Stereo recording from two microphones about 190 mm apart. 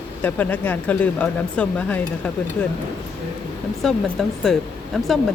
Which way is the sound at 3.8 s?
Centre (ahead or behind).